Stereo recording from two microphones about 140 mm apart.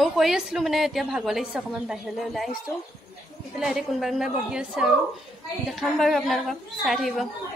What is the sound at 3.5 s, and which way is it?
A woman's voice, 5° right (ahead or behind).